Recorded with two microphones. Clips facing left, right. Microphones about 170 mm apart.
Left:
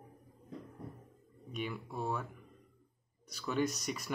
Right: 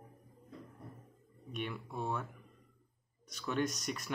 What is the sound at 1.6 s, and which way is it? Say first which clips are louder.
Speech: left 1 dB; 5° left (ahead or behind).